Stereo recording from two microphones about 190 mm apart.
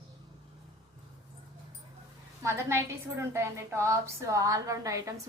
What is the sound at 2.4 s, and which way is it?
A woman's voice, 15° right (ahead or behind).